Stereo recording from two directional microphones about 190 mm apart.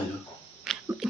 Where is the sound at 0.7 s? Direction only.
Centre (ahead or behind).